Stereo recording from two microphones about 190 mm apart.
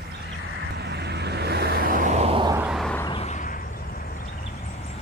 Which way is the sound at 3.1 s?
35° left (ahead or behind).